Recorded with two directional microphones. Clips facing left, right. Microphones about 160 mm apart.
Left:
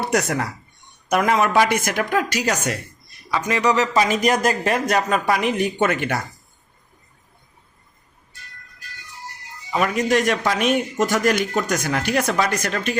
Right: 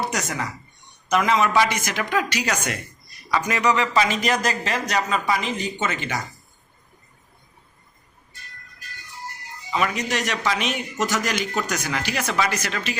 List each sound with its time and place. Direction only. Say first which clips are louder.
0.0 s a man's voice: left 5 dB; 60° left (ahead or behind); by 2.7 s 45° left (ahead or behind)
3.4 s speech: left 4 dB; 30° left (ahead or behind); by 6.2 s 60° left (ahead or behind)
9.7 s a man's voice: left 5 dB; 45° left (ahead or behind)